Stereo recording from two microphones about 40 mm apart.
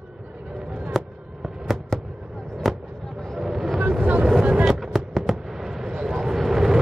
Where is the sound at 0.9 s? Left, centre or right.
Centre.